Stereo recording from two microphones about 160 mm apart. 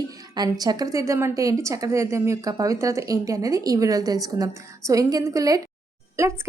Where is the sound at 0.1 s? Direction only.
25° right (ahead or behind).